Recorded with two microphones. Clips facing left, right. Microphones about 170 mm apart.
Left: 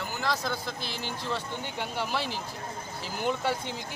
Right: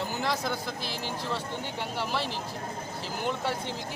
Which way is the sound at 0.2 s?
15° right (ahead or behind).